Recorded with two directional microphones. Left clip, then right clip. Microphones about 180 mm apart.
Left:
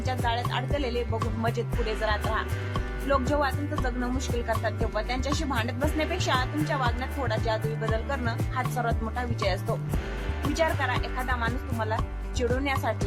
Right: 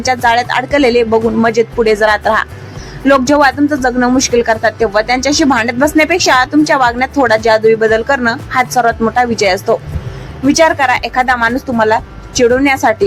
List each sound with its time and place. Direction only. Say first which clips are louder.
0.0 s speech: right 18 dB; 25° right (ahead or behind)
10.5 s speech: right 18 dB; 20° right (ahead or behind)